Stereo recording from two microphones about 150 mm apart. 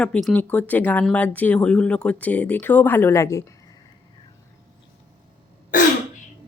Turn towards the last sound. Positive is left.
turn(degrees=60)  # may be behind; listen again after turning